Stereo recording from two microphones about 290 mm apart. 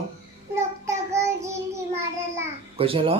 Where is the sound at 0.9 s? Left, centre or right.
Centre.